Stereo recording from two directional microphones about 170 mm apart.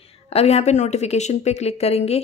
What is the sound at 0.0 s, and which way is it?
Speech, 35° left (ahead or behind).